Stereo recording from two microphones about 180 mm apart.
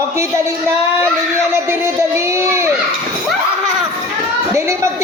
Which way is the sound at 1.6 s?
15° right (ahead or behind).